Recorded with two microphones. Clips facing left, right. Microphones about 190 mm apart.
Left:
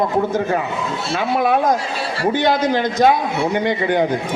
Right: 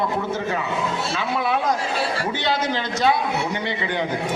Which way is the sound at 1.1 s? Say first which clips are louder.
Left 8 dB; 45° left (ahead or behind).